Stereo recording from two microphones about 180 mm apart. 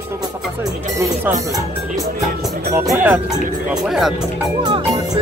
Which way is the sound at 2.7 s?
10° right (ahead or behind).